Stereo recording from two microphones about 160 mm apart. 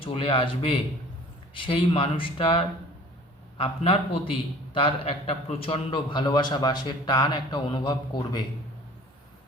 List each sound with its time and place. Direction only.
0.0 s a man's voice: 35° left (ahead or behind)